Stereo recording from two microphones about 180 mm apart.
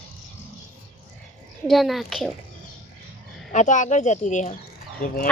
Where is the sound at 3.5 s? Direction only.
40° left (ahead or behind).